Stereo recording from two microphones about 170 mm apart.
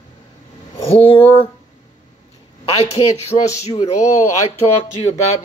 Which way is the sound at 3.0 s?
30° left (ahead or behind).